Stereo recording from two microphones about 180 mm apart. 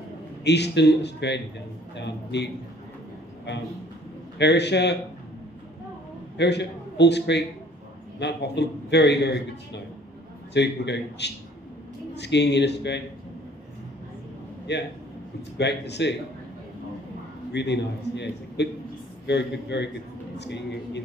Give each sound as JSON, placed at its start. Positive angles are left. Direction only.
{"t": 0.4, "sound": "a man's voice", "side_deg": 70}
{"t": 4.4, "sound": "a man's voice", "side_deg": 70}
{"t": 6.3, "sound": "a man's voice", "side_deg": 70}
{"t": 14.7, "sound": "a man's voice", "side_deg": 70}
{"t": 17.5, "sound": "a man's voice", "side_deg": 70}